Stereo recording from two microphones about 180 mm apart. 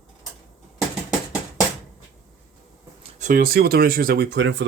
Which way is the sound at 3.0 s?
45° right (ahead or behind).